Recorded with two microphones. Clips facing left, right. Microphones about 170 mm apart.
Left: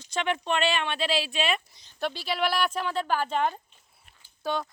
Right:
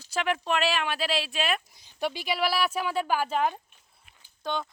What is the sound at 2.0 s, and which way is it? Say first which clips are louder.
Speech: even; 10° right (ahead or behind).